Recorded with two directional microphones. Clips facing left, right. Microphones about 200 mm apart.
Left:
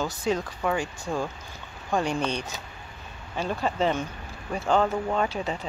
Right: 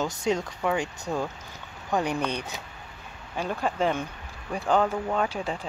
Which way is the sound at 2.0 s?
15° right (ahead or behind).